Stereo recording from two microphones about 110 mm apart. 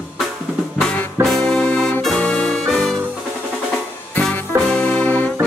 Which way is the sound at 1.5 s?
10° left (ahead or behind).